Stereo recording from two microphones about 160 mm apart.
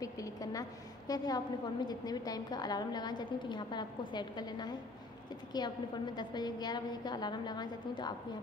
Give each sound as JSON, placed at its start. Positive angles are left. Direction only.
{"t": 0.0, "sound": "a woman's voice", "side_deg": 20}